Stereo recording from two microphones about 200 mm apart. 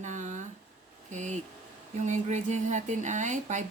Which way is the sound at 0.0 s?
35° right (ahead or behind).